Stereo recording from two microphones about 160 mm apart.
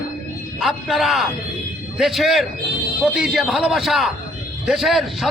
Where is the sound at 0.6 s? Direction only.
Centre (ahead or behind).